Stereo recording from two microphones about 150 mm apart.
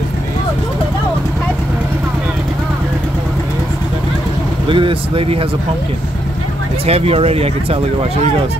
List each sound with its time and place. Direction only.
4.6 s speech: 35° right (ahead or behind)
6.9 s speech: 40° right (ahead or behind)